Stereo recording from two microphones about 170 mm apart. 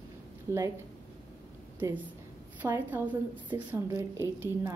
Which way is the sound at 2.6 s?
10° right (ahead or behind).